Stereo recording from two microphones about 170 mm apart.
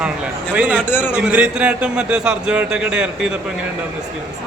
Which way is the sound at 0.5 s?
5° right (ahead or behind).